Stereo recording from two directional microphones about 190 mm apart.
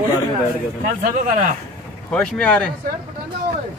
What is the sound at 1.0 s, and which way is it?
Speech, 45° right (ahead or behind).